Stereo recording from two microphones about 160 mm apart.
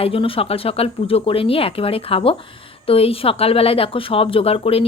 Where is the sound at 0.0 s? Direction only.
35° left (ahead or behind).